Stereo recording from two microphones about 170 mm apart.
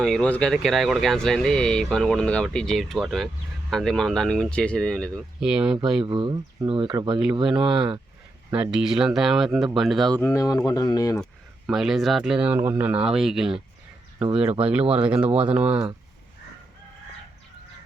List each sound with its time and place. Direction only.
0.0 s speech: 5° left (ahead or behind)
6.1 s speech: 30° right (ahead or behind)
8.4 s speech: 10° right (ahead or behind)
10.2 s speech: 15° left (ahead or behind)
11.2 s speech: centre (ahead or behind)